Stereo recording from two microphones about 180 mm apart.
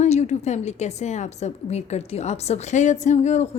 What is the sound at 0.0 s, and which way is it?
A woman's voice, 40° left (ahead or behind).